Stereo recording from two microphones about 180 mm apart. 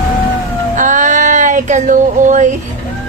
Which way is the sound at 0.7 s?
45° right (ahead or behind).